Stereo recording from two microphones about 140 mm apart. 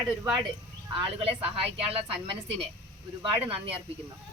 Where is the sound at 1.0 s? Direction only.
40° right (ahead or behind).